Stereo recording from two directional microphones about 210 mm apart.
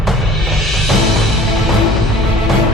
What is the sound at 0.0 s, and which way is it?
Music, centre (ahead or behind).